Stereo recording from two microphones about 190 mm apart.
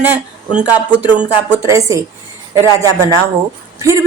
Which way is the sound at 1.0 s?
10° right (ahead or behind).